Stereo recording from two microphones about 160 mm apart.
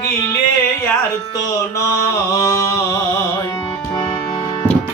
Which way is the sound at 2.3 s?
20° left (ahead or behind).